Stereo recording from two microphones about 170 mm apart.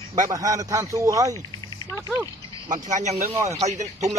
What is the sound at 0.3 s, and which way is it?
Speech, 20° right (ahead or behind).